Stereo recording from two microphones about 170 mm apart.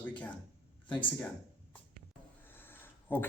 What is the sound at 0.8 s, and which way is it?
Speech, 30° left (ahead or behind).